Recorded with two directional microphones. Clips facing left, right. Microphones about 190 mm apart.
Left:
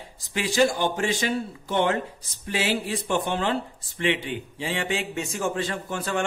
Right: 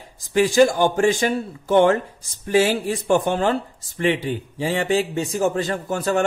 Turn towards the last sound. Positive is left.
turn(degrees=-40)  # may be behind; listen again after turning